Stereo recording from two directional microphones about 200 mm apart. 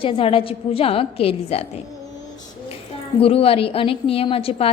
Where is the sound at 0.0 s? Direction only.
25° left (ahead or behind).